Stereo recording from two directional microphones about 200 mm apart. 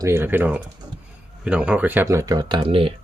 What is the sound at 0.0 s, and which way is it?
Speech, 10° right (ahead or behind).